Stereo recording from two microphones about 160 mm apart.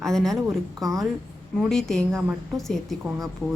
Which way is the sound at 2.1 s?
15° right (ahead or behind).